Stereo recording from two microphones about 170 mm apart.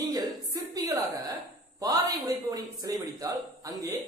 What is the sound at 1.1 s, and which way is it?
A woman's voice, 20° right (ahead or behind).